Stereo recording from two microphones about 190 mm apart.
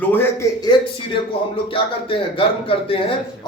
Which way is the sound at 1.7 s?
30° left (ahead or behind).